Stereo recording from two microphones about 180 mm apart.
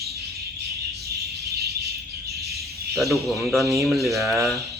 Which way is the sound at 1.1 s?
60° right (ahead or behind).